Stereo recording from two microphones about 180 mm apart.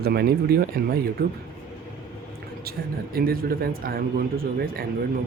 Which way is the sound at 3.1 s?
55° right (ahead or behind).